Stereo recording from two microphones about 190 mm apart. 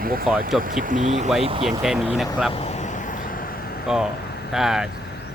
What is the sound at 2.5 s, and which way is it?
Vehicle, 35° left (ahead or behind).